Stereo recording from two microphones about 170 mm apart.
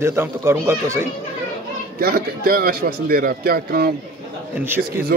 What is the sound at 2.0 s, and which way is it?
Speech, 60° right (ahead or behind).